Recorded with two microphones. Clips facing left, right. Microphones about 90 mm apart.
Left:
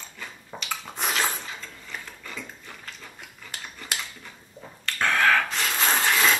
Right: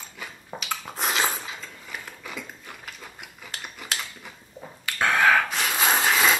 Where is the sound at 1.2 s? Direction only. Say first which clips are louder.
Right 1 dB; 10° right (ahead or behind).